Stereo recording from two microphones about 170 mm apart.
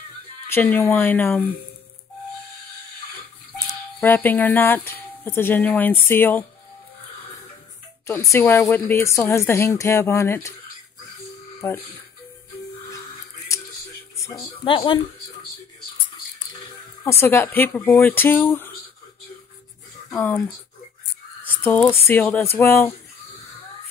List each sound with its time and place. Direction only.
0.5 s speech: 10° left (ahead or behind)
4.0 s speech: 10° left (ahead or behind)
8.1 s speech: 15° left (ahead or behind)
11.6 s speech: 15° left (ahead or behind)
14.1 s a sound: 15° left (ahead or behind)
14.4 s speech: 30° left (ahead or behind)
17.0 s speech: 15° left (ahead or behind)
20.1 s speech: 10° left (ahead or behind)
21.5 s a sound: 10° left (ahead or behind)
21.8 s speech: 15° left (ahead or behind)